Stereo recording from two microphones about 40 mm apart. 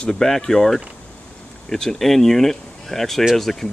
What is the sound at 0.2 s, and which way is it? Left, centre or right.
Speech, centre.